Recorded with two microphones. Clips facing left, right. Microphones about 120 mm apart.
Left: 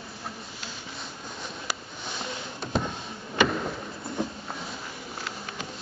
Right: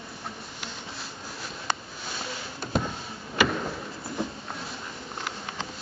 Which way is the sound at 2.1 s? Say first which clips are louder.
Left 1 dB; centre (ahead or behind).